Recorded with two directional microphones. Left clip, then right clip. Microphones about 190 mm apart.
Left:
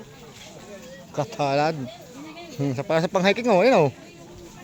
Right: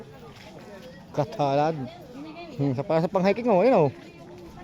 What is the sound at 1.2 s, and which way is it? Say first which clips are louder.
Speech: left 1 dB; 10° right (ahead or behind).